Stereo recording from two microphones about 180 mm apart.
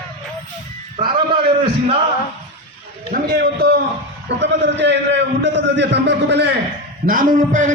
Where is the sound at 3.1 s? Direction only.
60° right (ahead or behind).